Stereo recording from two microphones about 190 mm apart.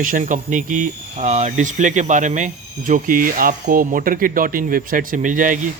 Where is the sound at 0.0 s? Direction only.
45° right (ahead or behind).